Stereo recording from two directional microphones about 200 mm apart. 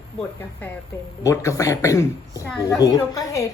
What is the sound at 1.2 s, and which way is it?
A woman's voice, 15° left (ahead or behind).